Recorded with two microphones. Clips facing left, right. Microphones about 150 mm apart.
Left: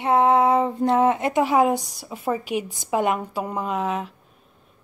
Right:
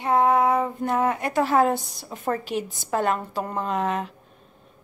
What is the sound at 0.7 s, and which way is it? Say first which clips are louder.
A woman's voice: left 5 dB; 25° left (ahead or behind).